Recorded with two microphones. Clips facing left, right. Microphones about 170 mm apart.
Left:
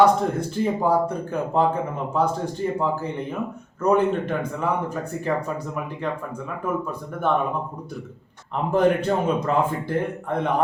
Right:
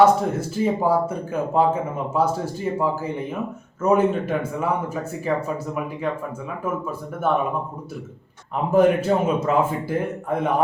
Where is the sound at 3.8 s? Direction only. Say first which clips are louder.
Right 1 dB; 5° right (ahead or behind).